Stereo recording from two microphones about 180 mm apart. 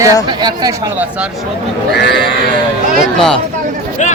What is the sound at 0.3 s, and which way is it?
Speech, 25° right (ahead or behind).